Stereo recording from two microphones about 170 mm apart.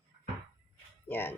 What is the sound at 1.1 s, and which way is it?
Speech, 10° left (ahead or behind).